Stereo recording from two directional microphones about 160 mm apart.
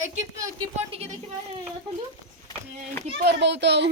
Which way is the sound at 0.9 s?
40° right (ahead or behind).